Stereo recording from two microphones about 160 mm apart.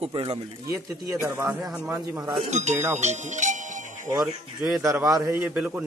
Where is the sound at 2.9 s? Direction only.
45° right (ahead or behind).